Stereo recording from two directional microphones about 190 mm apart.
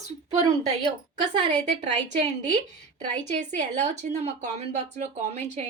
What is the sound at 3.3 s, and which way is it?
A woman's voice, 40° right (ahead or behind).